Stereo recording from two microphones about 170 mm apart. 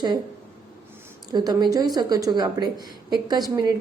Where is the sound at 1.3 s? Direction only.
25° right (ahead or behind).